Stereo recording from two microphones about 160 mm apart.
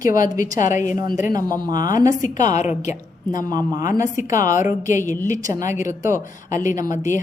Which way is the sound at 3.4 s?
25° right (ahead or behind).